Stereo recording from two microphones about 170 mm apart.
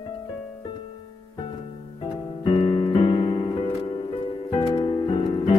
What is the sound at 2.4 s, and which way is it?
Piano, 30° left (ahead or behind).